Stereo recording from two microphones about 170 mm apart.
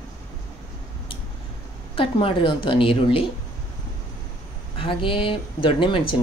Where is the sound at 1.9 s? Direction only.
30° left (ahead or behind).